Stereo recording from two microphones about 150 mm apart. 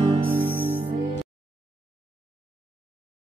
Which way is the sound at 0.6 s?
15° right (ahead or behind).